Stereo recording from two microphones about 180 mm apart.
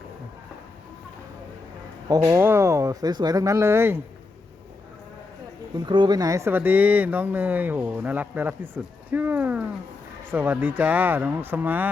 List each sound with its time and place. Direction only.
2.0 s speech: 20° right (ahead or behind)
5.8 s speech: 25° right (ahead or behind); by 11.9 s 10° right (ahead or behind)